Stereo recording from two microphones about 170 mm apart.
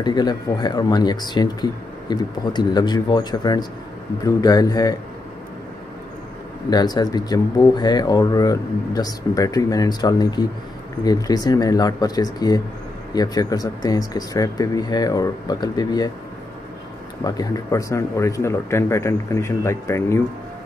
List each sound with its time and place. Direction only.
0.0 s speech: 25° left (ahead or behind)
6.7 s speech: 25° left (ahead or behind)
17.2 s speech: 20° left (ahead or behind)